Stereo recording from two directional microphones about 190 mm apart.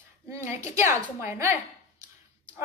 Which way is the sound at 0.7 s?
15° right (ahead or behind).